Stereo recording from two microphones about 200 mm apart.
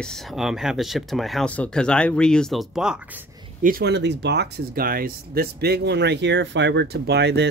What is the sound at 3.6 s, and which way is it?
Speech, 50° right (ahead or behind).